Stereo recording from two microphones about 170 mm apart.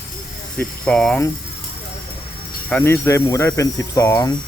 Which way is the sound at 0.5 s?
5° left (ahead or behind).